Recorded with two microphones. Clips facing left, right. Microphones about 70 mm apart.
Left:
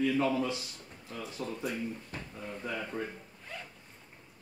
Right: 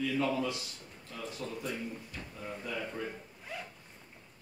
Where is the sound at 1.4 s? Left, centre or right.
Left.